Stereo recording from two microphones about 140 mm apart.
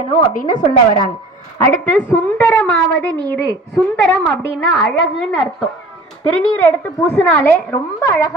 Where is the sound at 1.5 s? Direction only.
10° left (ahead or behind).